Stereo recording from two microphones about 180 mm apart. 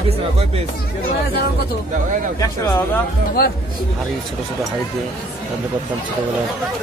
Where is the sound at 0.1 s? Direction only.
35° right (ahead or behind).